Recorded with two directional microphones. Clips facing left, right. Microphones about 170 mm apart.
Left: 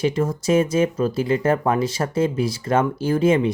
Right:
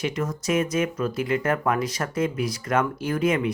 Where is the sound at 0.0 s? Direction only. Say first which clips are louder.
Left 6 dB; 30° left (ahead or behind).